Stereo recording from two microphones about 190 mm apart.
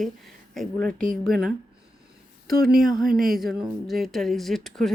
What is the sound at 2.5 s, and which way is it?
Speech, 50° right (ahead or behind).